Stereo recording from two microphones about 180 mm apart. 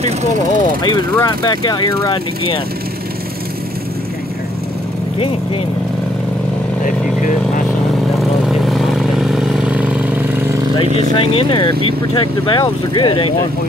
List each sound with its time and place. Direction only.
0.6 s speech: 25° left (ahead or behind)
8.2 s vehicle: centre (ahead or behind)
10.9 s speech: 40° right (ahead or behind)
11.1 s speech: 30° left (ahead or behind)